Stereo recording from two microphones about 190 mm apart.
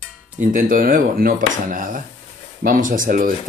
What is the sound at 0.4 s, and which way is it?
Speech, 45° right (ahead or behind).